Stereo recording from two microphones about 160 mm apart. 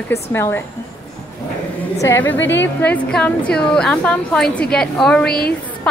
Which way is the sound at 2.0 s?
15° left (ahead or behind).